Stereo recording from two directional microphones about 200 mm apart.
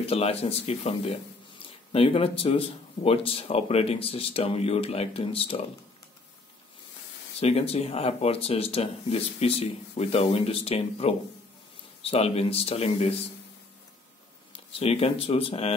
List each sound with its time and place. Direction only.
0.0 s speech: 30° left (ahead or behind)
7.3 s speech: 30° left (ahead or behind)
14.7 s speech: 30° left (ahead or behind)